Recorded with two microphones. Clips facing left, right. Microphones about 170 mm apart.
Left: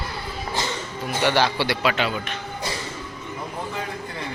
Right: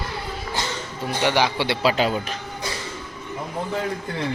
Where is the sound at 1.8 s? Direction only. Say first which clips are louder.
Right 3 dB; 35° right (ahead or behind).